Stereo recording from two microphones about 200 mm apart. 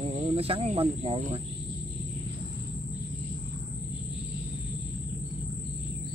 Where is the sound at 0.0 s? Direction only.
30° right (ahead or behind).